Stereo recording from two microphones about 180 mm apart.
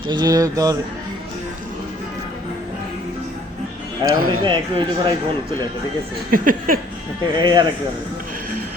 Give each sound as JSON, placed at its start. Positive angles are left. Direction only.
{"t": 0.1, "sound": "speech", "side_deg": -20}
{"t": 4.1, "sound": "speech", "side_deg": -25}
{"t": 6.3, "sound": "a sound", "side_deg": -50}
{"t": 7.3, "sound": "speech", "side_deg": -25}